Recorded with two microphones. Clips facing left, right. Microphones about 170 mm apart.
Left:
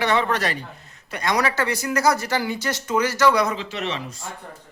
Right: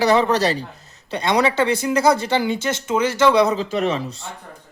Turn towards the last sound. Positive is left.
turn(degrees=-45)  # may be behind; listen again after turning